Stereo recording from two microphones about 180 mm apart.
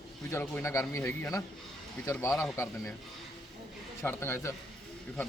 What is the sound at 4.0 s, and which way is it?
Speech, 15° left (ahead or behind).